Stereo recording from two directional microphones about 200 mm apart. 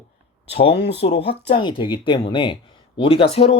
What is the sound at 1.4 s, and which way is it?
A man's voice, 25° left (ahead or behind).